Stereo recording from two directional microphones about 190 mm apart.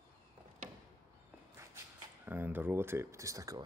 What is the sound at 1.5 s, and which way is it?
Walk, 15° right (ahead or behind).